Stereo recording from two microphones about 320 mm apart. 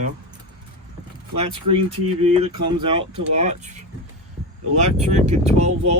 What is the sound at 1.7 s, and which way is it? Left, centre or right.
Speech, right.